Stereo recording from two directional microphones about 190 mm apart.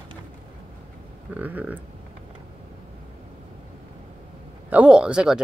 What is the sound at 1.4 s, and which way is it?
Speech, 10° right (ahead or behind).